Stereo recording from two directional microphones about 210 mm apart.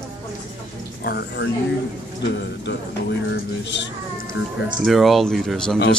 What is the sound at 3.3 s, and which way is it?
Speech, 60° left (ahead or behind).